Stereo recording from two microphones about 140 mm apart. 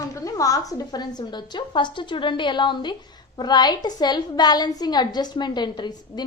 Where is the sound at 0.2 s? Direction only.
25° left (ahead or behind).